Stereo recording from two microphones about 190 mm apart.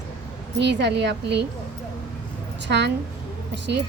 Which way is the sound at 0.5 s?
65° right (ahead or behind).